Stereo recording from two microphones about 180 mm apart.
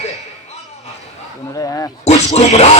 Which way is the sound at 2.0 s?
40° left (ahead or behind).